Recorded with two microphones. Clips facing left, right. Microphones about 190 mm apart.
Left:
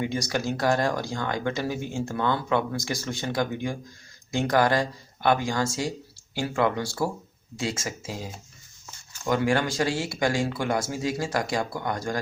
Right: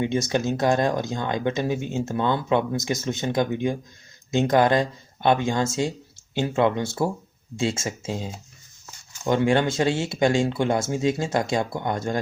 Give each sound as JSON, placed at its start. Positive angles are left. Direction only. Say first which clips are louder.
{"t": 0.0, "sound": "speech", "louder": "right 4 dB", "side_deg": -25}